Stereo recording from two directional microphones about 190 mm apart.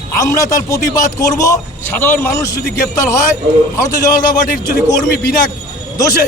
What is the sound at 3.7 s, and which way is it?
Speech, 15° left (ahead or behind).